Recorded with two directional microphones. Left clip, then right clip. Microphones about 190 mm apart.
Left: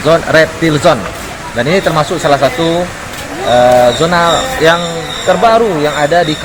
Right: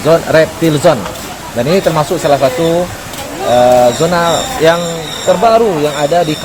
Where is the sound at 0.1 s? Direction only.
30° right (ahead or behind).